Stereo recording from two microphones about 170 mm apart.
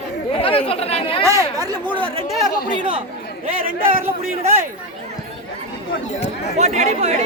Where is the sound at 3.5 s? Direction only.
55° right (ahead or behind).